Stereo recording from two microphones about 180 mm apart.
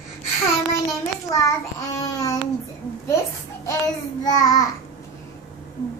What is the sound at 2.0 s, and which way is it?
Babbling, 20° left (ahead or behind).